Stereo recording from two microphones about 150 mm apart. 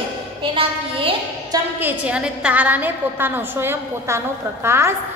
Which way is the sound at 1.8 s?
10° right (ahead or behind).